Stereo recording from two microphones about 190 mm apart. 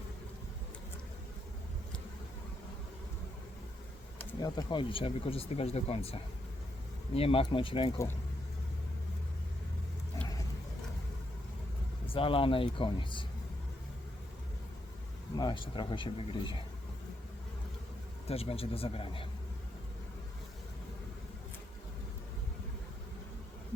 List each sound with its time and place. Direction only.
4.4 s speech: 20° left (ahead or behind)
12.0 s speech: 30° left (ahead or behind)
15.4 s speech: 25° left (ahead or behind)
18.3 s speech: 30° left (ahead or behind)